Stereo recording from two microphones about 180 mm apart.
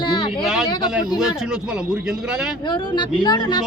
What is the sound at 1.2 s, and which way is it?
Speech, 5° right (ahead or behind).